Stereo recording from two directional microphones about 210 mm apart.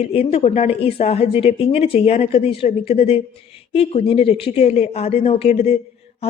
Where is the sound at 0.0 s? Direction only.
30° left (ahead or behind).